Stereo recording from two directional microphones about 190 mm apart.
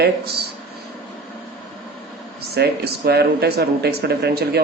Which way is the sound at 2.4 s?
55° right (ahead or behind).